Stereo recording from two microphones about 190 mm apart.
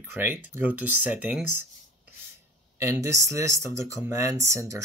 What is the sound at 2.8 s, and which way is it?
Speech, 15° right (ahead or behind).